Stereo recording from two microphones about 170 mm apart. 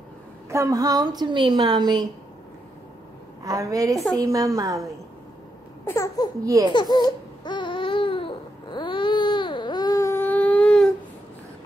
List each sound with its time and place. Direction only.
0.5 s a woman's voice: 20° right (ahead or behind)
3.4 s a woman's voice: 20° right (ahead or behind)
5.9 s speech: 20° left (ahead or behind)
6.4 s a woman's voice: 20° right (ahead or behind)
6.7 s babbling: 25° left (ahead or behind); by 10.9 s 5° left (ahead or behind)